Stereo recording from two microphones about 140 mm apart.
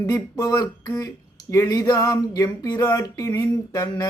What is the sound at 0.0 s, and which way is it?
Speech, 25° left (ahead or behind).